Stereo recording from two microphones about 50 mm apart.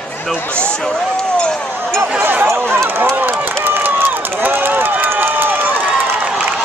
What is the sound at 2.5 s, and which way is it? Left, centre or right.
Speech, right.